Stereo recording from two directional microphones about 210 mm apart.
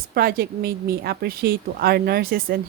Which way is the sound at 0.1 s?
45° right (ahead or behind).